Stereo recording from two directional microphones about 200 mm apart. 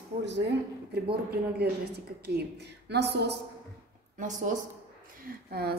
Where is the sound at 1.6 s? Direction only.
55° right (ahead or behind).